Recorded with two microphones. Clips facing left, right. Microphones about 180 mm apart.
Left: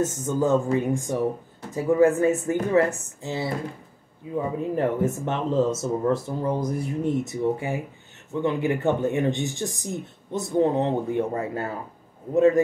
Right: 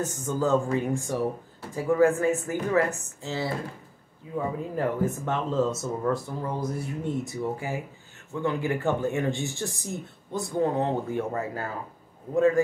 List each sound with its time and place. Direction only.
0.0 s speech: 20° left (ahead or behind)